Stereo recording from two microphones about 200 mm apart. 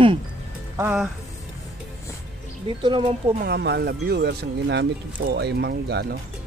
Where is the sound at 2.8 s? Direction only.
25° right (ahead or behind).